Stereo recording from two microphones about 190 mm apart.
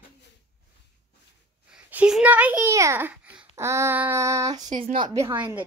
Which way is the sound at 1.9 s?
5° right (ahead or behind).